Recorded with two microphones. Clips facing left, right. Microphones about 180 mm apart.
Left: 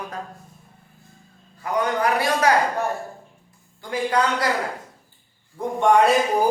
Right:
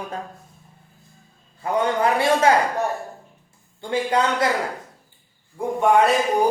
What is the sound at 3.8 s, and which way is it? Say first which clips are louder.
Speech: right 1 dB; 25° right (ahead or behind).